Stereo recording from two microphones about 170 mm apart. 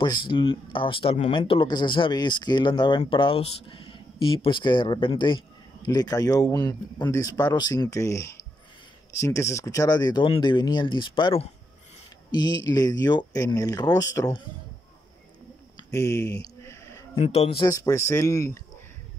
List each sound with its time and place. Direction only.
0.0 s speech: 25° left (ahead or behind)
15.9 s speech: 15° left (ahead or behind)
16.3 s a sound: 15° left (ahead or behind)
17.2 s speech: 35° left (ahead or behind)
17.6 s speech: 20° left (ahead or behind)